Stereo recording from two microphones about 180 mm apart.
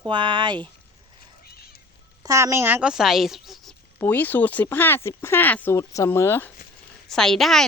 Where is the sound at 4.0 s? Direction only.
10° left (ahead or behind).